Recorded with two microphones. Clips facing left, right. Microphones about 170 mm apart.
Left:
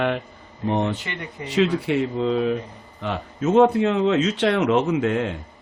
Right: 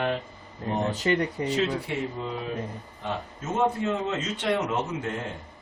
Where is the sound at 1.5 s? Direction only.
90° left.